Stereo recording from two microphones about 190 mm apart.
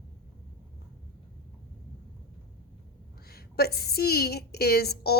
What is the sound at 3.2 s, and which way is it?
A woman's voice, 55° left (ahead or behind).